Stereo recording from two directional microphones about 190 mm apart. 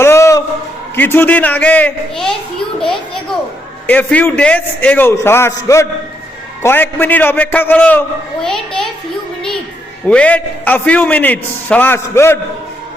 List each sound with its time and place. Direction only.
0.0 s a sound: 15° left (ahead or behind)
0.9 s a man's voice: 10° left (ahead or behind)
10.1 s a man's voice: 5° left (ahead or behind)